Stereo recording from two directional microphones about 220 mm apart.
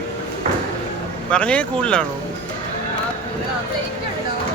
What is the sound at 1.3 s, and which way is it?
Speech, 5° left (ahead or behind).